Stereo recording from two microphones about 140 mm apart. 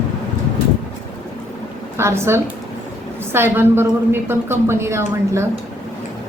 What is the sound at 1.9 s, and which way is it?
A man's voice, 20° right (ahead or behind).